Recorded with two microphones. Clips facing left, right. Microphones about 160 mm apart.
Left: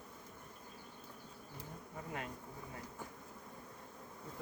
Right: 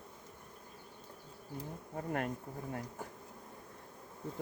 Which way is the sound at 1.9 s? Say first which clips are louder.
Right 8 dB; 55° right (ahead or behind).